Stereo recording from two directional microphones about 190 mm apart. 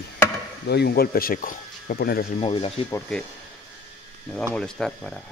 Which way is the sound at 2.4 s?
30° left (ahead or behind).